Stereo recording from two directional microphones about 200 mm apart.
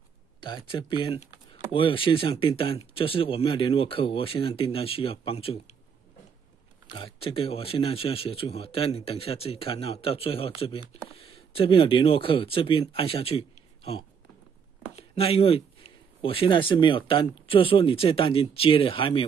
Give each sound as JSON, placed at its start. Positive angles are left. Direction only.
{"t": 0.7, "sound": "speech", "side_deg": 25}
{"t": 6.9, "sound": "speech", "side_deg": 25}
{"t": 15.0, "sound": "speech", "side_deg": 30}